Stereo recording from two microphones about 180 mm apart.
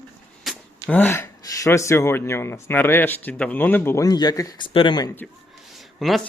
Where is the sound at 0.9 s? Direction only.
10° left (ahead or behind).